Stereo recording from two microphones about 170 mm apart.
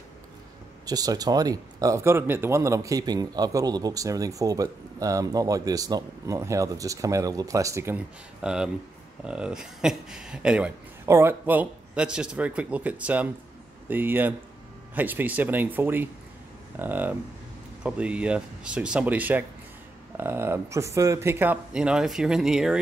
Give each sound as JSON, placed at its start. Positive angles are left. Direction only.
{"t": 0.8, "sound": "speech", "side_deg": -20}